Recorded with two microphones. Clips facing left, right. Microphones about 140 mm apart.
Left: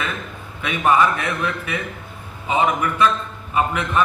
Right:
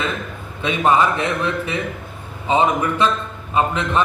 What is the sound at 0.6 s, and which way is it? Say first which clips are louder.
A man's voice: right 1 dB; 30° right (ahead or behind).